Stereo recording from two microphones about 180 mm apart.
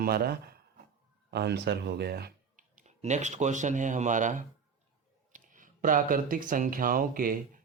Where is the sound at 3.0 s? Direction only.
40° right (ahead or behind).